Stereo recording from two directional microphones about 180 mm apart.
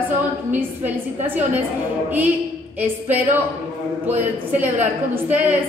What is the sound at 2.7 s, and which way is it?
Speech, 10° right (ahead or behind).